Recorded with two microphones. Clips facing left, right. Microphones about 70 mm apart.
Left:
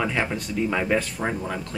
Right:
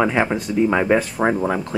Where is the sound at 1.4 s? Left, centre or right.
Right.